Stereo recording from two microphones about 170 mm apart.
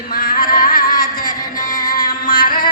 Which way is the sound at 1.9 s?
55° left (ahead or behind).